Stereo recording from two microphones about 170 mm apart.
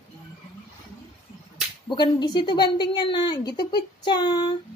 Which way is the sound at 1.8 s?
25° left (ahead or behind).